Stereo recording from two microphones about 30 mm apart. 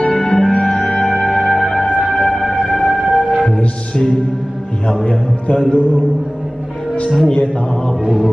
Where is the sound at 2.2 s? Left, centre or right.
Centre.